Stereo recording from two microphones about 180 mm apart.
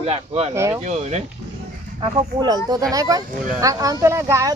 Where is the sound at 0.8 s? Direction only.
40° right (ahead or behind).